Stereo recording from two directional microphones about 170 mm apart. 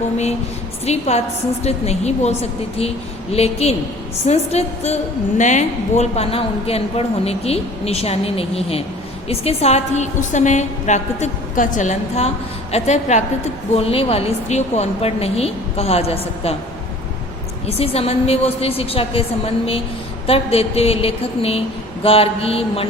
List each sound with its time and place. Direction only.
0.9 s a woman's voice: 40° left (ahead or behind)
17.7 s a woman's voice: 35° left (ahead or behind)
20.2 s a woman's voice: 35° left (ahead or behind)